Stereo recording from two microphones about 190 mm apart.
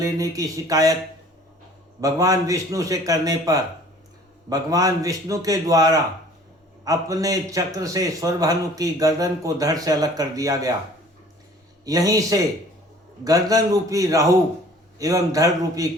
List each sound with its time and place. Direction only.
0.0 s a man's voice: 20° right (ahead or behind)
2.0 s a man's voice: 20° right (ahead or behind)
11.9 s a man's voice: 20° right (ahead or behind)